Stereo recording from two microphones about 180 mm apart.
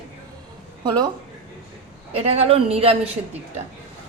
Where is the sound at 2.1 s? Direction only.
35° right (ahead or behind).